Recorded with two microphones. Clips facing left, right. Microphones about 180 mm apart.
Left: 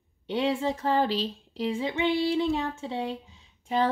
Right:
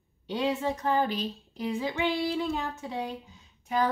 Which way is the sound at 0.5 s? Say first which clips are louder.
Left 1 dB; 30° left (ahead or behind).